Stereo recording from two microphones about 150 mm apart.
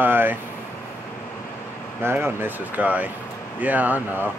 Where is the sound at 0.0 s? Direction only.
15° right (ahead or behind).